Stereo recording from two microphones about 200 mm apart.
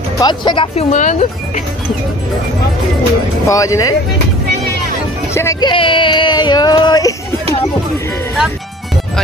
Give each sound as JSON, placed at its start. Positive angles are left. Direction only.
{"t": 0.2, "sound": "speech", "side_deg": 20}
{"t": 3.4, "sound": "speech", "side_deg": 15}
{"t": 5.3, "sound": "speech", "side_deg": 15}